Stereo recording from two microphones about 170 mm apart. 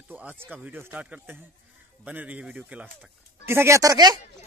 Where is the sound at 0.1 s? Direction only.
10° right (ahead or behind).